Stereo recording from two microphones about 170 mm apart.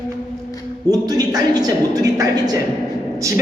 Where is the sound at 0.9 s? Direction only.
20° right (ahead or behind).